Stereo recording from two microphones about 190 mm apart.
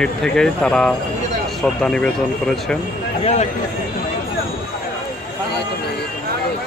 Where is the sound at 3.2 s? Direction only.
35° left (ahead or behind).